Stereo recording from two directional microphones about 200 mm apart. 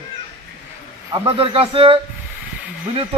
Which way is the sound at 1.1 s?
25° right (ahead or behind).